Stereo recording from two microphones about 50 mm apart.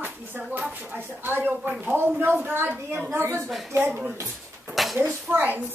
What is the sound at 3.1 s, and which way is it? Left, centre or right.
Speech, right.